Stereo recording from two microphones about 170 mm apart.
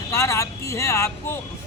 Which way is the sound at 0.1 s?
20° left (ahead or behind).